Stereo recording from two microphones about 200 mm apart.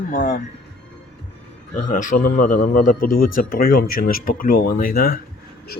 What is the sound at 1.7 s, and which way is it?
A man's voice, 40° left (ahead or behind).